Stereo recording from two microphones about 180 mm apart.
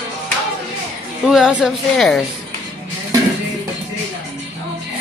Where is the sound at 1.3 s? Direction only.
5° right (ahead or behind).